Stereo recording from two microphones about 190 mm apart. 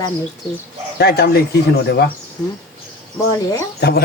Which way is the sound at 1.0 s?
55° left (ahead or behind).